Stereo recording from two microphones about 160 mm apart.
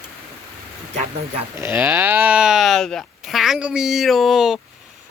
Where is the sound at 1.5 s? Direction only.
15° right (ahead or behind).